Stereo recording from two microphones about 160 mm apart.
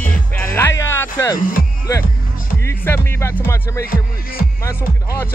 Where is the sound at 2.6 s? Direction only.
15° left (ahead or behind).